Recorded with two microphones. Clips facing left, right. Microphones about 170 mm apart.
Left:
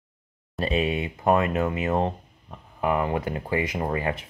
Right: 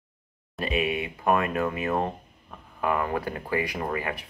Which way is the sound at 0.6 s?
30° left (ahead or behind).